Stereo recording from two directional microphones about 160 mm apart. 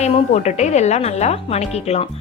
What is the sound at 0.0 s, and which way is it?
Speech, 45° left (ahead or behind).